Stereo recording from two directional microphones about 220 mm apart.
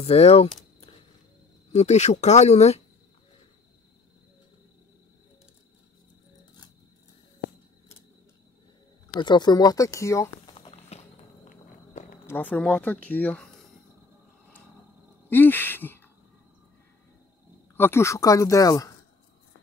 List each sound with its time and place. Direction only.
0.0 s speech: 30° left (ahead or behind)
1.7 s speech: 30° left (ahead or behind)
9.1 s speech: 20° left (ahead or behind)
11.4 s walk: 35° left (ahead or behind)
12.3 s speech: 5° left (ahead or behind)
15.2 s a sound: 10° left (ahead or behind)
17.7 s speech: 10° left (ahead or behind)